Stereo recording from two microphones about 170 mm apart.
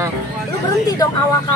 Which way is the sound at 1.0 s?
20° left (ahead or behind).